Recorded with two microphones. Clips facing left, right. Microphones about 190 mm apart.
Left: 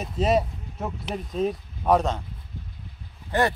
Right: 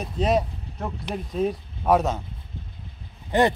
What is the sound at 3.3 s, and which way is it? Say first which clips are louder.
Speech: right 3 dB; 15° right (ahead or behind).